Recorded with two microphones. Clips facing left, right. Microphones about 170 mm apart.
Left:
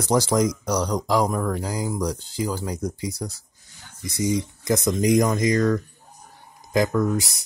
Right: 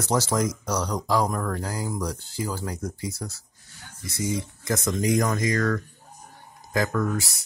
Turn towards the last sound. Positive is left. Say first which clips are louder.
# left 4 dB
turn(degrees=15)  # may be behind; listen again after turning